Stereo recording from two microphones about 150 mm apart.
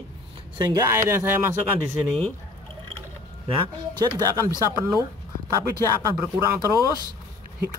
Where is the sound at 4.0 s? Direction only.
25° right (ahead or behind).